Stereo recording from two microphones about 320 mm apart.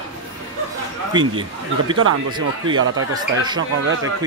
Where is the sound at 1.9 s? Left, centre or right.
Right.